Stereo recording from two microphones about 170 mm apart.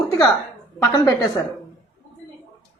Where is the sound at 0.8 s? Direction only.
20° left (ahead or behind).